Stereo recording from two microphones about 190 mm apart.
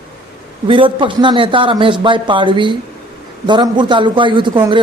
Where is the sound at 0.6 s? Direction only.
25° right (ahead or behind).